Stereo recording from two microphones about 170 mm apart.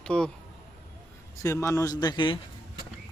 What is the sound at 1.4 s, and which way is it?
Speech, 20° left (ahead or behind).